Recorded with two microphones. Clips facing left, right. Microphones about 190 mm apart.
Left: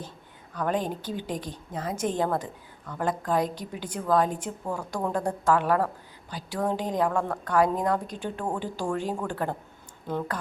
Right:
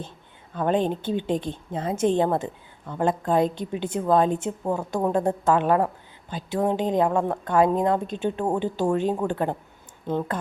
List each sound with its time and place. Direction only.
0.5 s a woman's voice: 25° right (ahead or behind)